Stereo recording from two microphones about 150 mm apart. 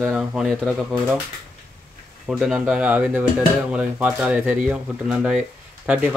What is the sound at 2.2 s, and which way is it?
Speech, centre (ahead or behind).